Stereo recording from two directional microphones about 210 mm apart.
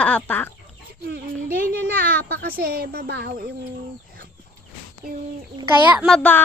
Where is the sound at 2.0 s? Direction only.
45° right (ahead or behind).